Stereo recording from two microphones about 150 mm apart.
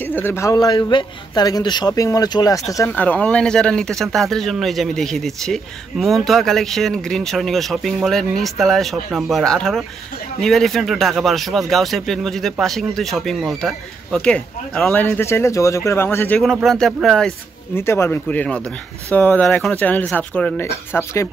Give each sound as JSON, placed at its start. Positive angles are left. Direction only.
{"t": 0.0, "sound": "speech", "side_deg": 15}
{"t": 2.9, "sound": "speech", "side_deg": 10}
{"t": 16.6, "sound": "speech", "side_deg": 0}
{"t": 17.7, "sound": "speech", "side_deg": 15}